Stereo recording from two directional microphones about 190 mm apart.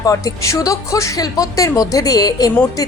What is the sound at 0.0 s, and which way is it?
A woman's voice, 20° left (ahead or behind).